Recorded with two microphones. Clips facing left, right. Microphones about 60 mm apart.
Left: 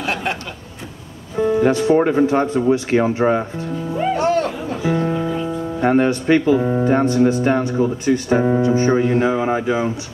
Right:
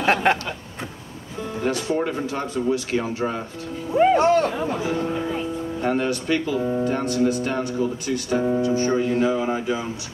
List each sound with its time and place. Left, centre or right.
0.0 s speech: right
1.4 s speech: left
4.0 s speech: right
5.8 s speech: left